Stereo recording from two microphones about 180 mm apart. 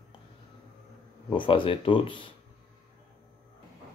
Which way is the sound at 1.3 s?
30° left (ahead or behind).